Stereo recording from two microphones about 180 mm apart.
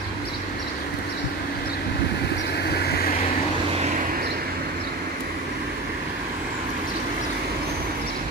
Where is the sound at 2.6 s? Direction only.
60° left (ahead or behind).